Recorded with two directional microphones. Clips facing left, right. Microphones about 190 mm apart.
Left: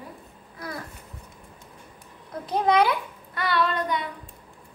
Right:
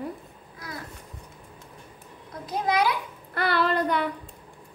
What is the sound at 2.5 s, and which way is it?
Speech, 55° left (ahead or behind).